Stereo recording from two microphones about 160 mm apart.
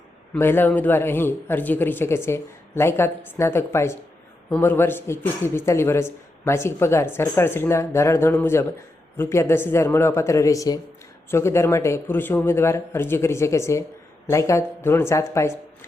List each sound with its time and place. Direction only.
0.3 s speech: 15° left (ahead or behind)